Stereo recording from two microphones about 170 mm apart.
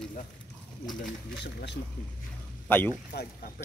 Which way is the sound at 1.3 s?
90° left.